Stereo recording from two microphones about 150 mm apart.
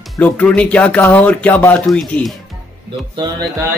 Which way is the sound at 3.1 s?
25° right (ahead or behind).